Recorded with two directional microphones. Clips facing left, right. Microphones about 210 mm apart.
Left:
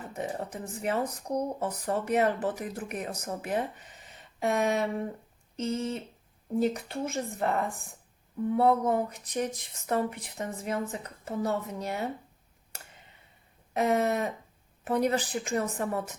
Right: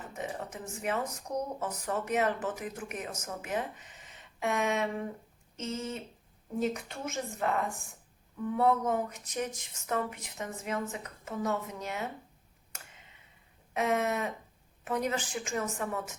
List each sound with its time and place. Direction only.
0.1 s speech: 35° left (ahead or behind)
4.1 s a sound: 35° left (ahead or behind)
5.5 s speech: 35° left (ahead or behind)
8.5 s speech: 35° left (ahead or behind)
13.7 s speech: 35° left (ahead or behind)